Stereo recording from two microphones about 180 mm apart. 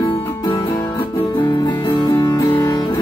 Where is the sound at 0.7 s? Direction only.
15° left (ahead or behind).